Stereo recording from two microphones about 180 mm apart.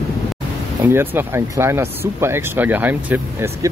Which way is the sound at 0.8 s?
10° right (ahead or behind).